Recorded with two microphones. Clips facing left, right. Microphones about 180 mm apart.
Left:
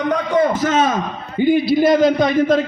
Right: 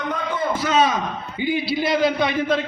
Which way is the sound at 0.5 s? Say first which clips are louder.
Left 2 dB; 45° left (ahead or behind).